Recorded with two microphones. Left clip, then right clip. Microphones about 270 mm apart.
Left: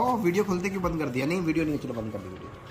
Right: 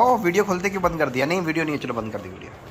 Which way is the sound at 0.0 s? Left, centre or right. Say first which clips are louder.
Right 7 dB; centre.